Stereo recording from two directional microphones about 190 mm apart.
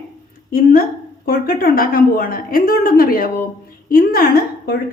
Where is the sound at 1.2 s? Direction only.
50° left (ahead or behind).